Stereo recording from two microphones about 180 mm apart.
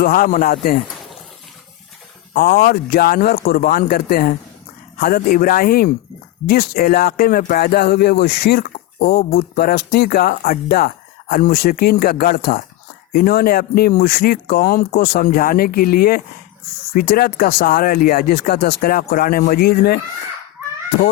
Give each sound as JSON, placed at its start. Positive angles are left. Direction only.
{"t": 0.0, "sound": "speech", "side_deg": 55}
{"t": 2.3, "sound": "speech", "side_deg": 55}